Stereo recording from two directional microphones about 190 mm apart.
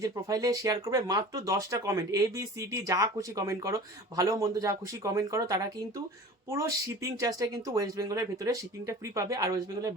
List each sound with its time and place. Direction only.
0.0 s speech: 20° right (ahead or behind)